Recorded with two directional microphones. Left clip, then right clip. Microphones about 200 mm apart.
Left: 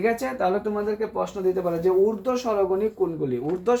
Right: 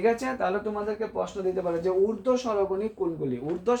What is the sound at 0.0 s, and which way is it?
Speech, 35° left (ahead or behind).